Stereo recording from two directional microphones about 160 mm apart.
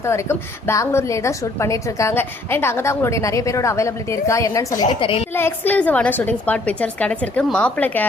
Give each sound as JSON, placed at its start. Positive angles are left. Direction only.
{"t": 0.0, "sound": "a woman's voice", "side_deg": 15}
{"t": 5.3, "sound": "a woman's voice", "side_deg": 15}